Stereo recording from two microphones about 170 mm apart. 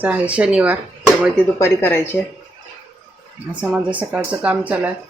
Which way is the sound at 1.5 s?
15° left (ahead or behind).